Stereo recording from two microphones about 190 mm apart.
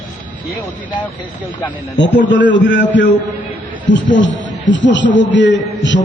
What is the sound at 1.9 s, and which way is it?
Speech, 70° left (ahead or behind).